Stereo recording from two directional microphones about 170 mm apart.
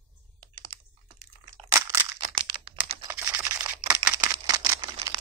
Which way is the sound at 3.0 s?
15° right (ahead or behind).